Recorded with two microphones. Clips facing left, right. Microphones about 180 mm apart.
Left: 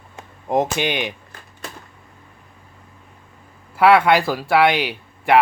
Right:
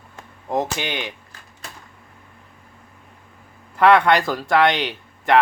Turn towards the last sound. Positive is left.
turn(degrees=10)  # may be behind; listen again after turning